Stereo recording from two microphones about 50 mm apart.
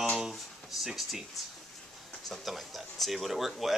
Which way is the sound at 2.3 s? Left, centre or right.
Centre.